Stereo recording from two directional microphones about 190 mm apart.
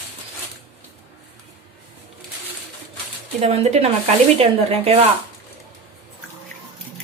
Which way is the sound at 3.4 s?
30° right (ahead or behind).